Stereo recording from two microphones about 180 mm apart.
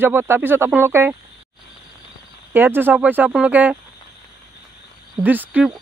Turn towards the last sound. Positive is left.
turn(degrees=-10)  # may be behind; listen again after turning